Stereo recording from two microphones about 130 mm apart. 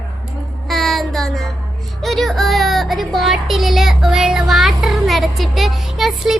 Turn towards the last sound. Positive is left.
turn(degrees=0)  # may be behind; listen again after turning